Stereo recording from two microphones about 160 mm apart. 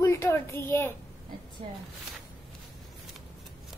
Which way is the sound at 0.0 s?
15° left (ahead or behind).